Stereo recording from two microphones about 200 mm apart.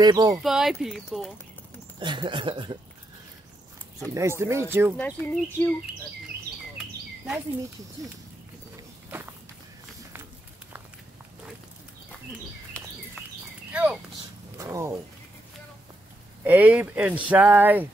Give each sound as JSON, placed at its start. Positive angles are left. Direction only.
{"t": 0.0, "sound": "speech", "side_deg": -20}
{"t": 0.4, "sound": "speech", "side_deg": 0}
{"t": 2.0, "sound": "speech", "side_deg": -25}
{"t": 4.1, "sound": "speech", "side_deg": -15}
{"t": 4.9, "sound": "speech", "side_deg": 10}
{"t": 12.7, "sound": "a sound", "side_deg": 5}
{"t": 13.7, "sound": "horse", "side_deg": -10}
{"t": 14.6, "sound": "speech", "side_deg": -15}
{"t": 16.4, "sound": "speech", "side_deg": -10}